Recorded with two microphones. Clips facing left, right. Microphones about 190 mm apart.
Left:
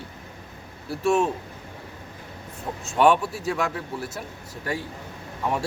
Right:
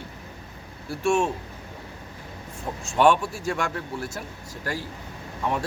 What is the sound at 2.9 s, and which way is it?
A man's voice, 5° left (ahead or behind).